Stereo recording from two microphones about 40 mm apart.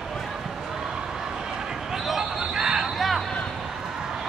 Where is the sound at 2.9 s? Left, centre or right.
Centre.